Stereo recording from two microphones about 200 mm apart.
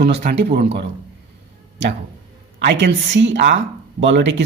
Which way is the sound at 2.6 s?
60° right (ahead or behind).